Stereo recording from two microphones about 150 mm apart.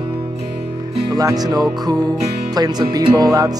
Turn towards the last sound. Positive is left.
turn(degrees=-25)  # may be behind; listen again after turning